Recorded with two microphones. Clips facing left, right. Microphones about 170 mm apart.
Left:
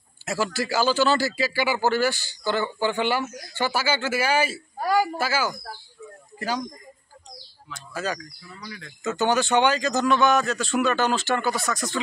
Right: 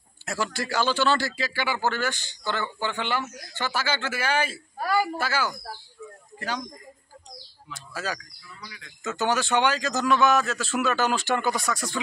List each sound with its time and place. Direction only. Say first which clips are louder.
0.2 s a man's voice: left 3 dB; 5° left (ahead or behind)
7.7 s a man's voice: left 3 dB; 5° right (ahead or behind)
8.5 s speech: left 4 dB; 45° left (ahead or behind)
9.0 s a man's voice: left 3 dB; centre (ahead or behind)